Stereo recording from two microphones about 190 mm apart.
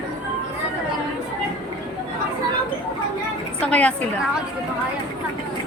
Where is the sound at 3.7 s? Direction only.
5° left (ahead or behind).